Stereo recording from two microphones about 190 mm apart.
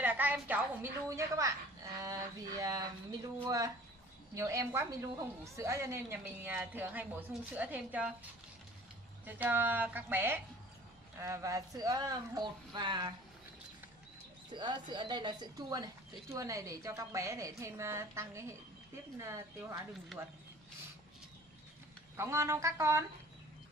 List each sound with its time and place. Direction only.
0.0 s a woman's voice: 10° right (ahead or behind)
9.2 s speech: 10° right (ahead or behind)
14.5 s speech: 25° right (ahead or behind)
20.1 s speech: centre (ahead or behind)
22.1 s speech: 15° right (ahead or behind)